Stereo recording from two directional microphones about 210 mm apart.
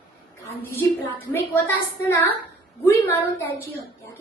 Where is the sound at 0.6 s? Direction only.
10° left (ahead or behind).